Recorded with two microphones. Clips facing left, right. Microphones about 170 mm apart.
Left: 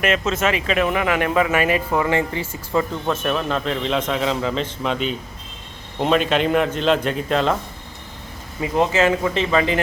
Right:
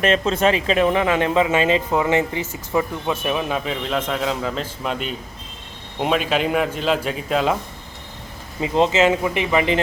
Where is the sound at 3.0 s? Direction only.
10° right (ahead or behind).